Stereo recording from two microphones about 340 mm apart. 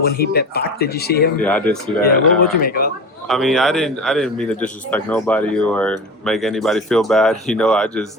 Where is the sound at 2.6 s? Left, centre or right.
Left.